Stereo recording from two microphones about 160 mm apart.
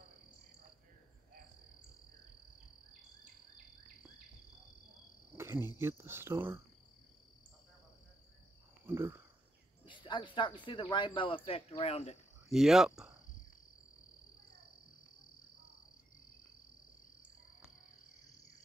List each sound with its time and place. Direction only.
5.4 s cricket: 15° right (ahead or behind)
5.8 s speech: 15° right (ahead or behind)
8.8 s frog: 15° right (ahead or behind)
9.8 s a sound: 30° left (ahead or behind)
10.6 s speech: 30° left (ahead or behind)
12.4 s speech: centre (ahead or behind)